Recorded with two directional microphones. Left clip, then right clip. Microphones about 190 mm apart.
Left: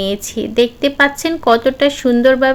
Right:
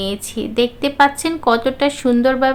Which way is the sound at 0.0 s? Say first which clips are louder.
Left 4 dB; 15° left (ahead or behind).